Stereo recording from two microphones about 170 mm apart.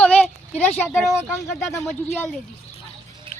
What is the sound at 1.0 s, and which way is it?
Speech, centre (ahead or behind).